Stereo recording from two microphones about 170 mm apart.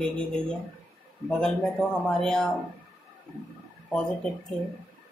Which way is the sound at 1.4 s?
5° left (ahead or behind).